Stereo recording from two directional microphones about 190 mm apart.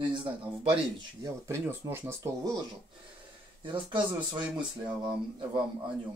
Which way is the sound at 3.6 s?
25° right (ahead or behind).